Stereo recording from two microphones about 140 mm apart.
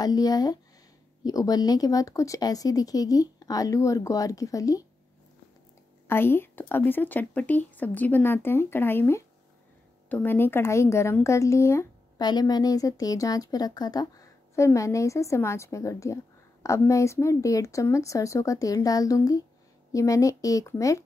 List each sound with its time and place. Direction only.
0.0 s speech: 30° left (ahead or behind)
6.0 s speech: 15° left (ahead or behind)